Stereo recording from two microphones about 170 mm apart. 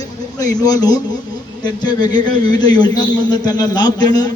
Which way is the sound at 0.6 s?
25° left (ahead or behind).